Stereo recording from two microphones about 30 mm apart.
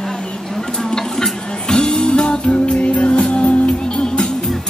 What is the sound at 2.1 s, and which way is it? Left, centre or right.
Music, left.